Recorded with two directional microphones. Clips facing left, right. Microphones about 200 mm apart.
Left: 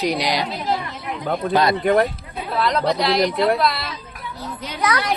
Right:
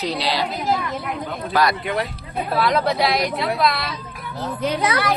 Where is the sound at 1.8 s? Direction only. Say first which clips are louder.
Left 8 dB; 50° left (ahead or behind).